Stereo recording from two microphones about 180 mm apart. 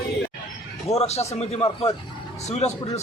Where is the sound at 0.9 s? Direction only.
35° left (ahead or behind).